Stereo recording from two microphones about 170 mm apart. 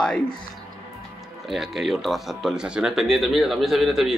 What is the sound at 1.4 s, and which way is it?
Speech, centre (ahead or behind).